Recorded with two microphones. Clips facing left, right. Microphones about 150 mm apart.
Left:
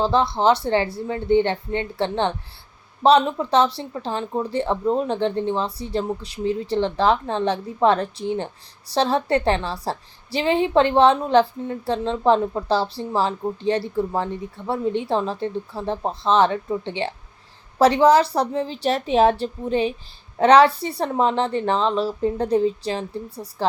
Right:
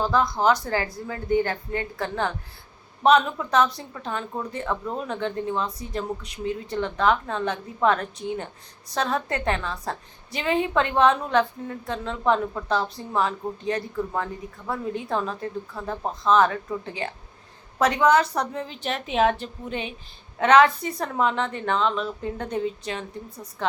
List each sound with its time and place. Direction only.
0.0 s a woman's voice: 30° left (ahead or behind)